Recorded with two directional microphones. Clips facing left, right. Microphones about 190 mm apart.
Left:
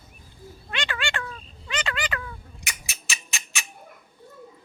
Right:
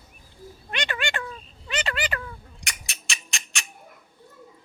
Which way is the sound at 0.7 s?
20° right (ahead or behind).